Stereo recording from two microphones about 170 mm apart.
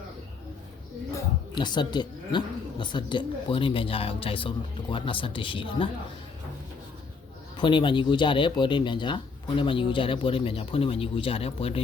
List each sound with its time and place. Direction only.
1.1 s a woman's voice: 25° left (ahead or behind)
7.5 s a woman's voice: 30° left (ahead or behind)